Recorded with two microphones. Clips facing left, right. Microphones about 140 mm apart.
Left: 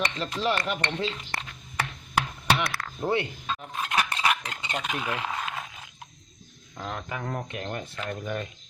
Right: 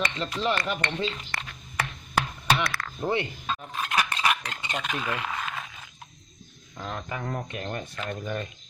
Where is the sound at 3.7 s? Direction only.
20° left (ahead or behind).